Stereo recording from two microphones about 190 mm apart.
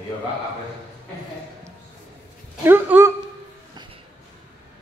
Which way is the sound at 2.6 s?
10° right (ahead or behind).